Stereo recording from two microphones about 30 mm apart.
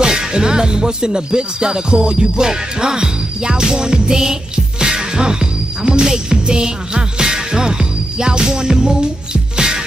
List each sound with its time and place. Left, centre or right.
0.0 s music: right